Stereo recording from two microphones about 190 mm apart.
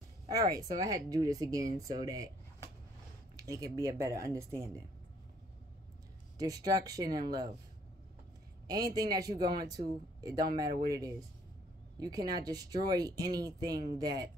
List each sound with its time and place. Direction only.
0.3 s speech: 20° right (ahead or behind)
3.3 s speech: 20° right (ahead or behind)
6.3 s speech: 20° right (ahead or behind)
8.9 s speech: 20° right (ahead or behind)